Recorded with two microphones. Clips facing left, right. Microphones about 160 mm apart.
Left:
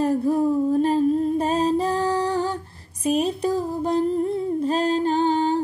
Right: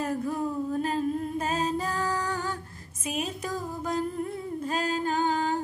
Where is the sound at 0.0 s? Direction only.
35° left (ahead or behind).